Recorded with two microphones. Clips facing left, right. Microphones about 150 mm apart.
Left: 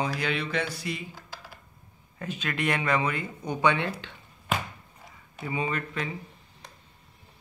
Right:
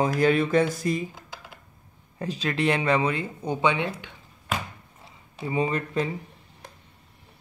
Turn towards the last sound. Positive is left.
turn(degrees=-35)  # may be behind; listen again after turning